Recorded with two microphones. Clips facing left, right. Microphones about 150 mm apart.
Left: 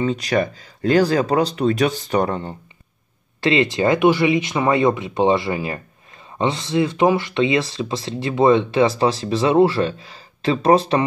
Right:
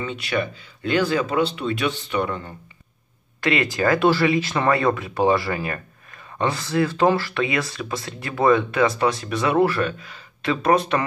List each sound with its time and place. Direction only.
0.0 s speech: 35° left (ahead or behind)